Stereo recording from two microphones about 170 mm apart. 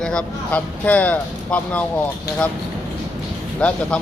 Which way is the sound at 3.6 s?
5° left (ahead or behind).